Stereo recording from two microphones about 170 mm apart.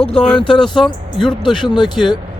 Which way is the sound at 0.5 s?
Centre (ahead or behind).